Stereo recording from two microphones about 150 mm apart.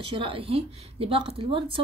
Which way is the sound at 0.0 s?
35° right (ahead or behind).